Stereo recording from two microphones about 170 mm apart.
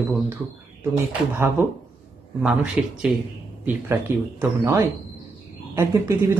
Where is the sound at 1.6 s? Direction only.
15° right (ahead or behind).